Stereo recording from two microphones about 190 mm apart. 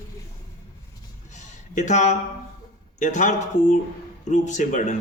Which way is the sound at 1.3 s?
40° left (ahead or behind).